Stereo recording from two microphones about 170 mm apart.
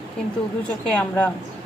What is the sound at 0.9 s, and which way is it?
Speech, 5° left (ahead or behind).